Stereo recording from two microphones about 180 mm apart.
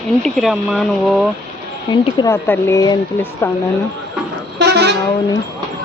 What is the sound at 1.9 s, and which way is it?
Speech, 20° left (ahead or behind).